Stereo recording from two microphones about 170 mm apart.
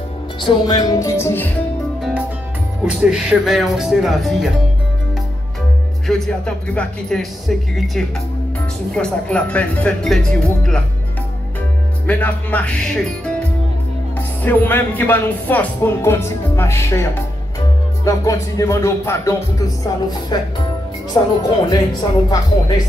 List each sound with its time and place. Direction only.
0.4 s speech: 25° left (ahead or behind)
2.0 s music: 5° right (ahead or behind)
2.8 s speech: 5° right (ahead or behind)
6.0 s speech: centre (ahead or behind)
12.1 s speech: 10° left (ahead or behind)
18.0 s music: 20° left (ahead or behind)